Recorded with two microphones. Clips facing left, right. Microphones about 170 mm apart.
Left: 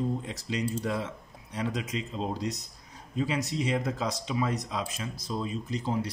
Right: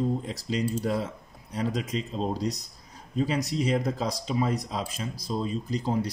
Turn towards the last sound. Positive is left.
turn(degrees=-35)  # may be behind; listen again after turning